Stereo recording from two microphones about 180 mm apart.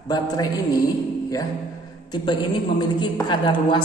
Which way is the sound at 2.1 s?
25° left (ahead or behind).